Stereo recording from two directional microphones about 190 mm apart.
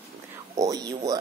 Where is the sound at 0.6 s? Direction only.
20° right (ahead or behind).